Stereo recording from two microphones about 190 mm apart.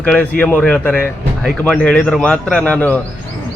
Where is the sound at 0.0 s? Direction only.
5° left (ahead or behind).